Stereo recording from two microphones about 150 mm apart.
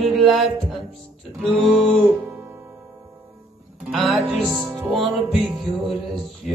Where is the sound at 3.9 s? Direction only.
Centre (ahead or behind).